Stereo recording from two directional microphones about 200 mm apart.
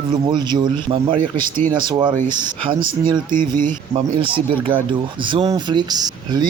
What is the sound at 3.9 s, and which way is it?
Speech, 25° right (ahead or behind).